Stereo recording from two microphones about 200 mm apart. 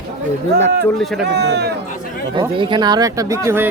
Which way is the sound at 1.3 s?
55° right (ahead or behind).